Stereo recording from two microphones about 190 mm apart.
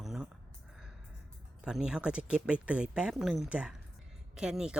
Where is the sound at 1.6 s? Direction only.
5° right (ahead or behind).